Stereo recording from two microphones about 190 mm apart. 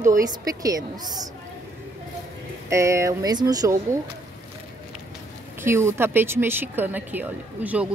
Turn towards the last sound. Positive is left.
turn(degrees=-10)  # may be behind; listen again after turning